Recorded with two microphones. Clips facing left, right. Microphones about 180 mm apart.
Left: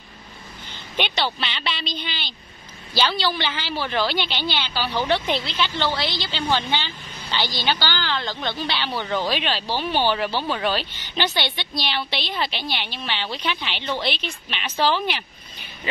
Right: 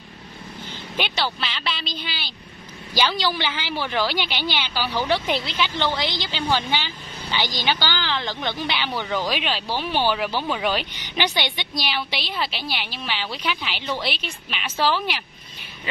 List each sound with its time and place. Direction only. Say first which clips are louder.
0.9 s a woman's voice: left 1 dB; centre (ahead or behind)